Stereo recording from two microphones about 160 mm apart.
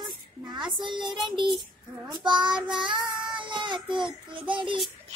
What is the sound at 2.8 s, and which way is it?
Child singing, 30° right (ahead or behind).